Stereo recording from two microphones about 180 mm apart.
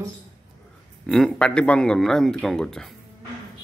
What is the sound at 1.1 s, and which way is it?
A man's voice, 5° left (ahead or behind).